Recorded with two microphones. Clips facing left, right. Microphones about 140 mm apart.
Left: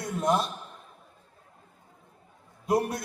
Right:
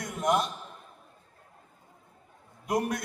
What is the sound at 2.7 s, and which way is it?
Speech, 25° left (ahead or behind).